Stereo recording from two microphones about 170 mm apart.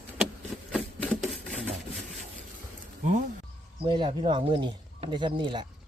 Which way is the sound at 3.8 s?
30° right (ahead or behind).